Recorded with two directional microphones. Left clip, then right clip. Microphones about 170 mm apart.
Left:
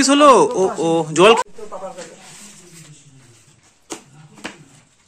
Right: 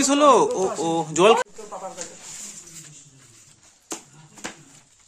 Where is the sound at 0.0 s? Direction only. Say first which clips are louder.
Left 5 dB; centre (ahead or behind).